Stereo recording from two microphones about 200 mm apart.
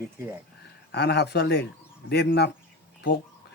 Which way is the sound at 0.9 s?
55° left (ahead or behind).